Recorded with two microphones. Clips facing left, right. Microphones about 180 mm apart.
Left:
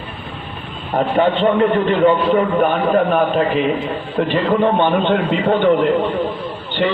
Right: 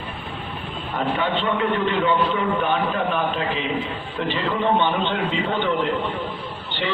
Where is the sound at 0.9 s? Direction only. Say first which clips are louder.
Left 8 dB; 45° left (ahead or behind).